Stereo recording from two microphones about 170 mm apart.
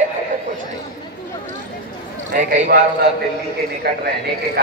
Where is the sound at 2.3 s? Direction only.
55° right (ahead or behind).